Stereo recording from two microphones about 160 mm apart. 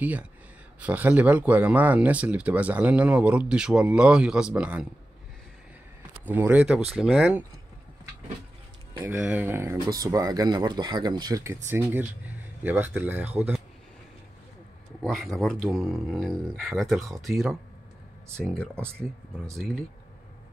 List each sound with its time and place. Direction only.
0.0 s speech: 10° right (ahead or behind)
6.2 s speech: 10° right (ahead or behind)
9.2 s speech: 10° right (ahead or behind)
15.0 s speech: centre (ahead or behind)